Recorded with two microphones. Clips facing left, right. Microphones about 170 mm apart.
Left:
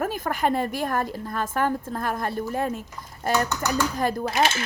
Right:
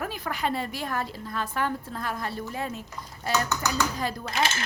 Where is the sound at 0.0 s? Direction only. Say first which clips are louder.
Left 5 dB; 45° left (ahead or behind).